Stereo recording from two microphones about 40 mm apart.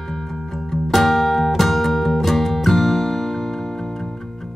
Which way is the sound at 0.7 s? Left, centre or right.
Centre.